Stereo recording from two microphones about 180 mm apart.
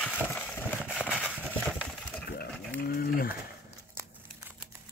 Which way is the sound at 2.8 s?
55° left (ahead or behind).